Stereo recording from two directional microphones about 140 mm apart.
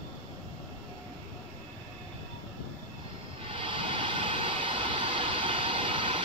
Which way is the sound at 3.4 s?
40° right (ahead or behind).